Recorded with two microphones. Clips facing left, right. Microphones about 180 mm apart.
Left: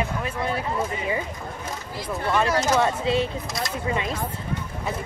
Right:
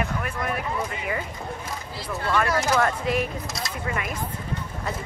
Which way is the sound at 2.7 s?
25° left (ahead or behind).